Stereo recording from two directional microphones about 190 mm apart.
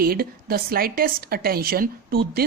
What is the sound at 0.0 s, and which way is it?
A woman's voice, 50° right (ahead or behind).